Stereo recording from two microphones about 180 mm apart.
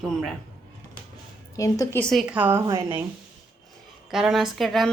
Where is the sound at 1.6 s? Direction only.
15° left (ahead or behind).